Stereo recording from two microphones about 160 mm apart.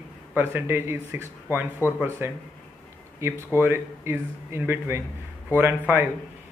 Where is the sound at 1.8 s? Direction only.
15° left (ahead or behind).